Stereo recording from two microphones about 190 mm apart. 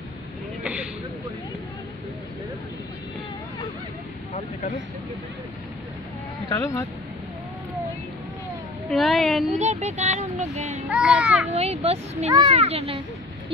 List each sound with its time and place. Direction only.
6.5 s speech: 15° left (ahead or behind)
8.8 s a woman's voice: centre (ahead or behind)
9.5 s speech: 35° right (ahead or behind)
10.9 s a child's voice: 5° right (ahead or behind)
11.5 s speech: 30° right (ahead or behind)